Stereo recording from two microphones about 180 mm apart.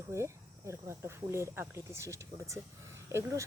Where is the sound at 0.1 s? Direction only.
15° right (ahead or behind).